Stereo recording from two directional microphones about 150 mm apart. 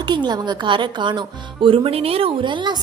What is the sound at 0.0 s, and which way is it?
Speech, 30° right (ahead or behind).